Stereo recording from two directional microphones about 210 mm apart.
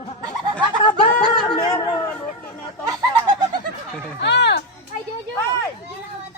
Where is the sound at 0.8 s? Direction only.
20° left (ahead or behind).